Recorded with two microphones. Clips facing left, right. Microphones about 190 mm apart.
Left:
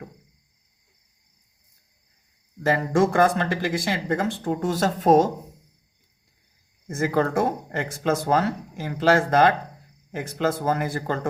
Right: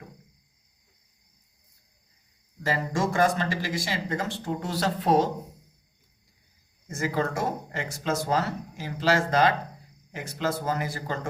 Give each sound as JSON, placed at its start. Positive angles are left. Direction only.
{"t": 2.6, "sound": "speech", "side_deg": 55}
{"t": 6.8, "sound": "speech", "side_deg": 55}